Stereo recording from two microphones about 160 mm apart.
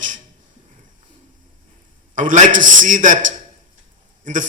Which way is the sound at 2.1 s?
55° right (ahead or behind).